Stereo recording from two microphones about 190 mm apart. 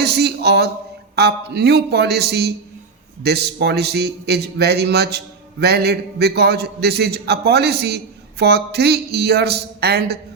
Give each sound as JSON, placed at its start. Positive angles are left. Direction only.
{"t": 0.0, "sound": "a man's voice", "side_deg": -60}